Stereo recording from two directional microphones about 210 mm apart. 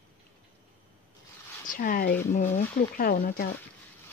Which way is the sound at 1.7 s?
40° left (ahead or behind).